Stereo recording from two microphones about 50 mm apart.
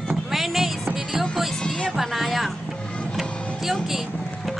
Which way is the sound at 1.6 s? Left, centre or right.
Centre.